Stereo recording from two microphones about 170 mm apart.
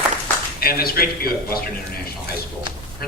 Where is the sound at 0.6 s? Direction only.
60° left (ahead or behind).